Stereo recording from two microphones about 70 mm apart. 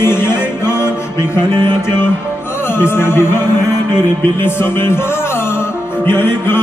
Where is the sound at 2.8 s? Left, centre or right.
Left.